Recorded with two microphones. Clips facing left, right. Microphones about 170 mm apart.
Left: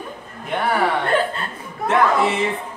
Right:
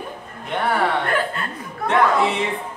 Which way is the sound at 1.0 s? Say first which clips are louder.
Left 3 dB; 30° left (ahead or behind).